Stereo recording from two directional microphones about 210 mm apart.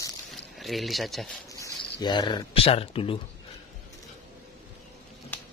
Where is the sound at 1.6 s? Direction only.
20° left (ahead or behind).